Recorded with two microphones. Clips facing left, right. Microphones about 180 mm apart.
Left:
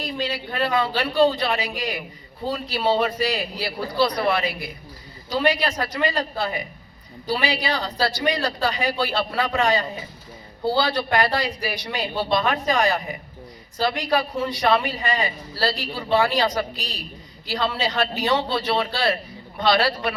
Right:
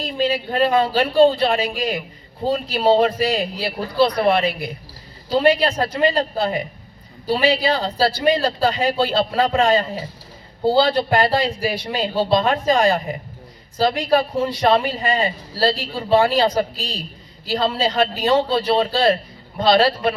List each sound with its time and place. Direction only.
0.0 s a man's voice: 30° right (ahead or behind)